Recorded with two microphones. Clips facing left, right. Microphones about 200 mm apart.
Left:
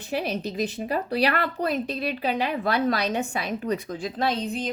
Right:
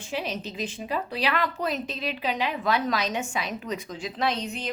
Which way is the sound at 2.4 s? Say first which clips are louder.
Left 1 dB; 35° left (ahead or behind).